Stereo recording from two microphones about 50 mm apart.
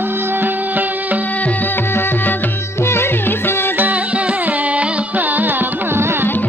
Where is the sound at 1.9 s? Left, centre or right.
Left.